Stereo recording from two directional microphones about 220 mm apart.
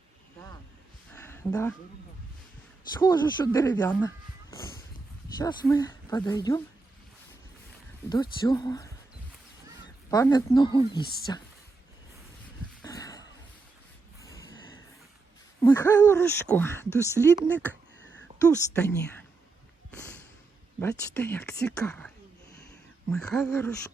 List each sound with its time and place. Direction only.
1.1 s a sound: 10° left (ahead or behind)
2.9 s speech: 20° left (ahead or behind)
5.4 s speech: 15° left (ahead or behind)
8.1 s speech: 20° left (ahead or behind)
10.1 s speech: 15° left (ahead or behind)
12.8 s a sound: 15° left (ahead or behind)
15.6 s speech: 15° left (ahead or behind)
18.0 s a sound: 60° right (ahead or behind)
18.3 s speech: 15° left (ahead or behind)
19.9 s thump: 10° left (ahead or behind)
20.7 s speech: 10° left (ahead or behind)